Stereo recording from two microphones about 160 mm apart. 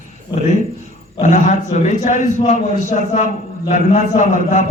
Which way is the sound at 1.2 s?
50° left (ahead or behind).